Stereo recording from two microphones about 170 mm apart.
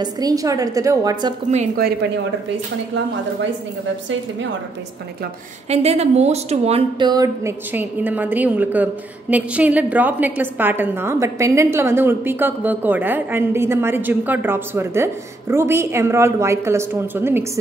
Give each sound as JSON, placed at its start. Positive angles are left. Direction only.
{"t": 0.0, "sound": "a woman's voice", "side_deg": -20}
{"t": 5.7, "sound": "a woman's voice", "side_deg": -40}
{"t": 7.1, "sound": "a woman's voice", "side_deg": -20}
{"t": 7.7, "sound": "a woman's voice", "side_deg": -10}